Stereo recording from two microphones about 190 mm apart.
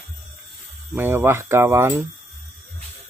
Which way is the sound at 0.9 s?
10° right (ahead or behind).